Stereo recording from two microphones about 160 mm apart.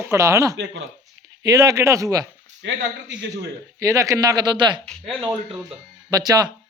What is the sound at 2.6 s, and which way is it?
Speech, 90° right.